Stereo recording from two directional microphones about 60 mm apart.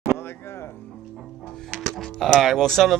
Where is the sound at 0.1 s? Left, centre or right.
Left.